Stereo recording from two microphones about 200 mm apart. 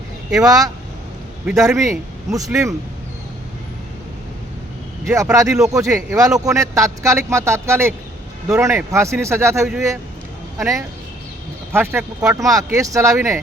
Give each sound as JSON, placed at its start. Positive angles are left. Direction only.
{"t": 0.4, "sound": "speech", "side_deg": -20}
{"t": 5.0, "sound": "speech", "side_deg": -15}